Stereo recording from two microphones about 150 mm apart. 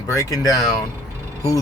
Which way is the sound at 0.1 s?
20° left (ahead or behind).